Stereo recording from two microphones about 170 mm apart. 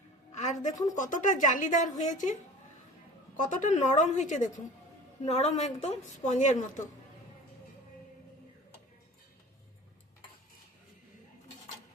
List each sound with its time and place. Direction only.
0.3 s a sound: 45° left (ahead or behind)
0.9 s a woman's voice: 50° left (ahead or behind)
3.3 s a woman's voice: 50° left (ahead or behind)